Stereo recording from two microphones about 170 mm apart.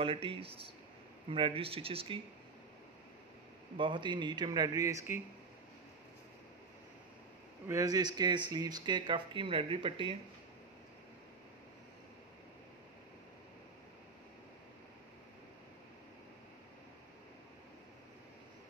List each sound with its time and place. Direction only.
0.0 s speech: 30° right (ahead or behind)
3.7 s speech: 30° right (ahead or behind)
7.6 s speech: 20° right (ahead or behind)